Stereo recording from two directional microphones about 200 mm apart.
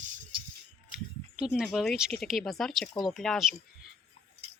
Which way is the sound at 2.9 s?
20° left (ahead or behind).